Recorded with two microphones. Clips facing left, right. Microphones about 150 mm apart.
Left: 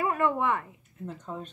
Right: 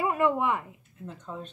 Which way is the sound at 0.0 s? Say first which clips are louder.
Right 1 dB; 15° right (ahead or behind).